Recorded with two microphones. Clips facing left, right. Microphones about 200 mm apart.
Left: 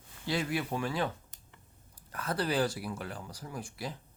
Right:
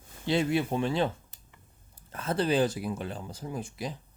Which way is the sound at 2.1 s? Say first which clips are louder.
Right 5 dB; 25° right (ahead or behind).